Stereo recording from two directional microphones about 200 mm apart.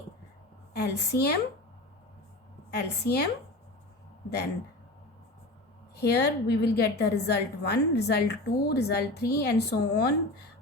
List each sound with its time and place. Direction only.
0.7 s a woman's voice: 55° left (ahead or behind)
2.6 s a woman's voice: 55° left (ahead or behind)
6.0 s a woman's voice: 55° left (ahead or behind)